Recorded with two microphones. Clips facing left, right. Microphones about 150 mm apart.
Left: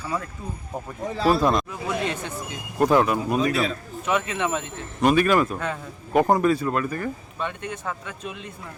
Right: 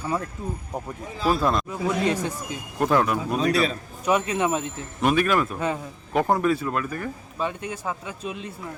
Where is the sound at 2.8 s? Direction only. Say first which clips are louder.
Left 2 dB; 5° left (ahead or behind).